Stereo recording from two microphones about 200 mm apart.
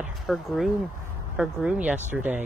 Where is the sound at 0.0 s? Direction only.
Centre (ahead or behind).